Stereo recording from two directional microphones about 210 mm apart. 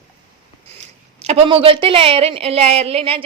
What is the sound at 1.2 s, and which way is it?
A woman's voice, 25° right (ahead or behind).